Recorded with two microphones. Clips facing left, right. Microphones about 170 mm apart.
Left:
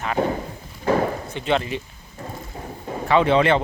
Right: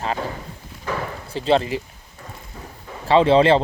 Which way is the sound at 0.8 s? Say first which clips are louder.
Left 7 dB; 35° left (ahead or behind).